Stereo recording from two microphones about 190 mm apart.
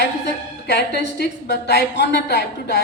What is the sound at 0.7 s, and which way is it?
A woman's voice, 60° left (ahead or behind).